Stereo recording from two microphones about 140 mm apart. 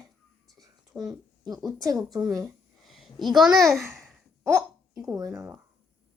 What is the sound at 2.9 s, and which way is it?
Speech, centre (ahead or behind).